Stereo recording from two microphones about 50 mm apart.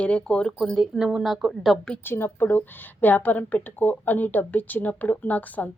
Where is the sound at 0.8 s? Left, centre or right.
Centre.